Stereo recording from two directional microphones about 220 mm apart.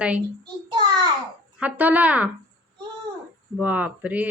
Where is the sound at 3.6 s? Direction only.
5° right (ahead or behind).